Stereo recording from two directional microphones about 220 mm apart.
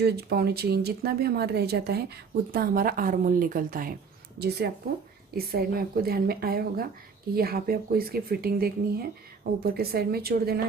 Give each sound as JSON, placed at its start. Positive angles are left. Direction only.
{"t": 0.0, "sound": "speech", "side_deg": -45}